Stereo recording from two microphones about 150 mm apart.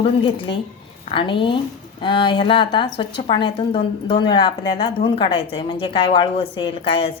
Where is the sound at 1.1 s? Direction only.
35° left (ahead or behind).